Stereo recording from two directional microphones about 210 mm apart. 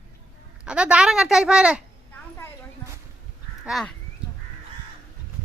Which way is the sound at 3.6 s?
Centre (ahead or behind).